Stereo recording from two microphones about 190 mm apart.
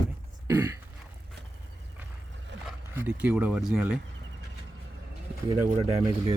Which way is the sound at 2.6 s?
5° right (ahead or behind).